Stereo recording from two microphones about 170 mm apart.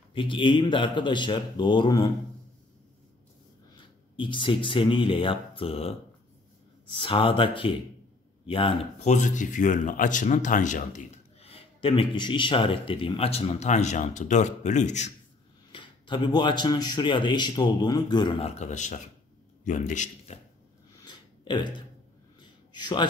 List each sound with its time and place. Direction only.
0.1 s speech: 30° left (ahead or behind)
4.2 s speech: 30° left (ahead or behind)
15.7 s speech: 30° left (ahead or behind)
18.6 s a man's voice: 45° left (ahead or behind)
21.0 s burping: 25° left (ahead or behind)
22.4 s a sound: 25° left (ahead or behind)